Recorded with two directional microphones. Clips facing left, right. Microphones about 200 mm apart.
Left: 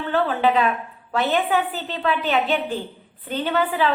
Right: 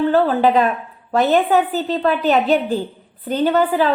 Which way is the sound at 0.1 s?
40° right (ahead or behind).